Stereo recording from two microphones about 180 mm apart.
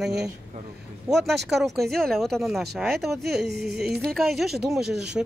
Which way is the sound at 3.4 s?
65° right (ahead or behind).